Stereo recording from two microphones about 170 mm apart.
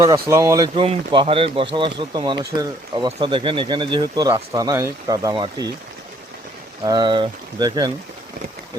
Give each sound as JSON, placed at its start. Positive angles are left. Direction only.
{"t": 0.0, "sound": "speech", "side_deg": -20}
{"t": 6.8, "sound": "speech", "side_deg": -25}